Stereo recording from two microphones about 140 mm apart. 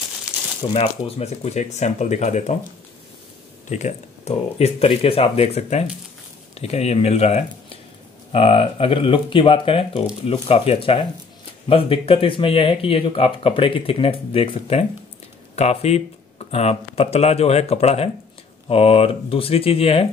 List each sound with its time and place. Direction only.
0.3 s crumpling: 5° right (ahead or behind)
0.7 s speech: 45° left (ahead or behind)
3.6 s speech: 60° left (ahead or behind)